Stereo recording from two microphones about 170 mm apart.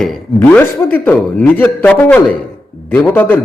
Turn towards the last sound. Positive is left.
turn(degrees=10)  # may be behind; listen again after turning